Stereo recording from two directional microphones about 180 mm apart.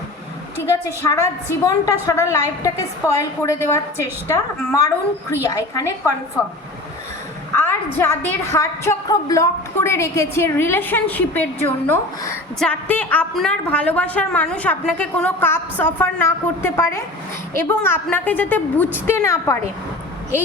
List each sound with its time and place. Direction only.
1.6 s a woman's voice: 20° left (ahead or behind)
7.5 s a woman's voice: 10° left (ahead or behind)